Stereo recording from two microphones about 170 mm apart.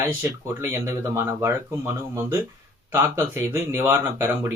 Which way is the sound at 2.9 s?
15° right (ahead or behind).